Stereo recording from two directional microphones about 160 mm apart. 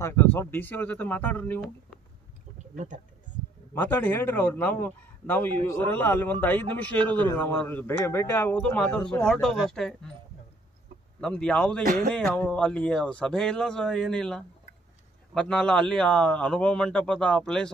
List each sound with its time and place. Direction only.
0.0 s a man's voice: 15° left (ahead or behind)
2.7 s speech: 50° right (ahead or behind)
3.7 s a man's voice: 10° left (ahead or behind)
11.1 s a man's voice: 5° left (ahead or behind)
11.8 s speech: 60° right (ahead or behind)
12.4 s a man's voice: 5° left (ahead or behind)